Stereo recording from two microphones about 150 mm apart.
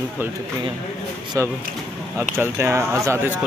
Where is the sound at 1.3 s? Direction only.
25° right (ahead or behind).